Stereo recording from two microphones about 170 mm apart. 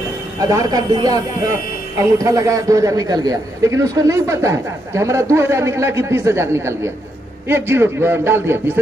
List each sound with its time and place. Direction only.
0.4 s a man's voice: 20° right (ahead or behind)